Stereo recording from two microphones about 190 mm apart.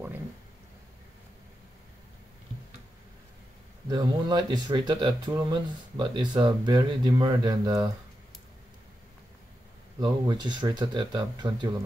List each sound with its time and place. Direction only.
3.9 s speech: 20° right (ahead or behind)
9.9 s speech: 20° right (ahead or behind)